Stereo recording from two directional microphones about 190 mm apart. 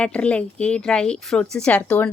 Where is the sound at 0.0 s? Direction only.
5° left (ahead or behind).